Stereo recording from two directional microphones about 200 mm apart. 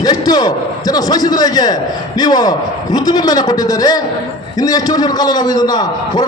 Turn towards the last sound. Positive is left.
turn(degrees=20)  # may be behind; listen again after turning